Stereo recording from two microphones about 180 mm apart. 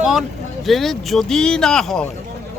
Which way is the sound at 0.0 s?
Centre (ahead or behind).